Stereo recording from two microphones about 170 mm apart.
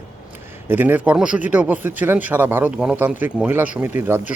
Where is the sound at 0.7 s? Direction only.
10° right (ahead or behind).